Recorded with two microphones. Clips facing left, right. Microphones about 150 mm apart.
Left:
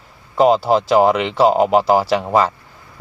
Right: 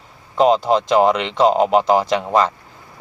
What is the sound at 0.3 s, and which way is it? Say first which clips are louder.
Speech: left 1 dB; 5° left (ahead or behind).